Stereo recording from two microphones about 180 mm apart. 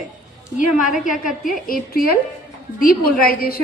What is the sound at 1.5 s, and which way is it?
A woman's voice, 55° left (ahead or behind).